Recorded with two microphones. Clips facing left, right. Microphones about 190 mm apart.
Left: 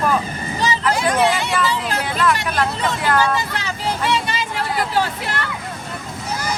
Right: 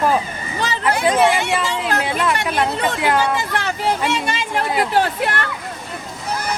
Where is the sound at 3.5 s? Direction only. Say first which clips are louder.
Right 4 dB; 55° right (ahead or behind).